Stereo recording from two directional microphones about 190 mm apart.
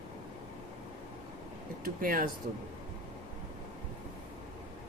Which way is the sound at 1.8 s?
50° right (ahead or behind).